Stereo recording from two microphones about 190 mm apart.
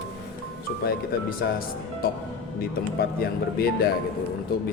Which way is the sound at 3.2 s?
55° left (ahead or behind).